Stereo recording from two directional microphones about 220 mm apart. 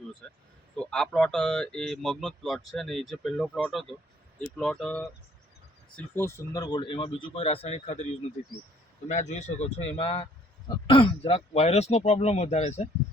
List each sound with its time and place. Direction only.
0.2 s speech: centre (ahead or behind); by 8.0 s 30° left (ahead or behind)
9.0 s speech: 30° left (ahead or behind)